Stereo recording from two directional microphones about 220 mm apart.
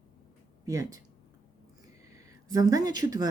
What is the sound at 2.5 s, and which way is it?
Speech, 15° right (ahead or behind).